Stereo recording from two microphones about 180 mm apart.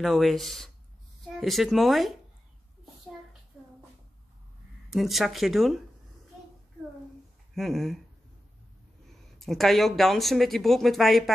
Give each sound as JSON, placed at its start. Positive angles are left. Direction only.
{"t": 0.0, "sound": "speech", "side_deg": 0}
{"t": 4.8, "sound": "speech", "side_deg": 0}
{"t": 7.5, "sound": "speech", "side_deg": 0}
{"t": 9.4, "sound": "speech", "side_deg": 0}